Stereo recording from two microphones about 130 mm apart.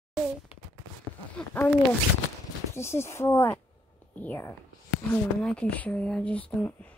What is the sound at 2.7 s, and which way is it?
Speech, 20° left (ahead or behind).